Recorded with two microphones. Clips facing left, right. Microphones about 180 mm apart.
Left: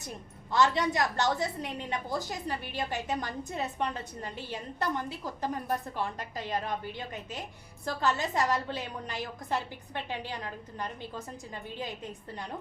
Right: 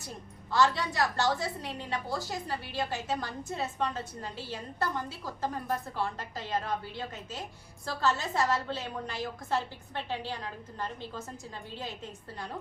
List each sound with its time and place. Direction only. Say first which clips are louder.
0.5 s a woman's voice: left 1 dB; 20° left (ahead or behind)
11.7 s a woman's voice: left 2 dB; 15° left (ahead or behind)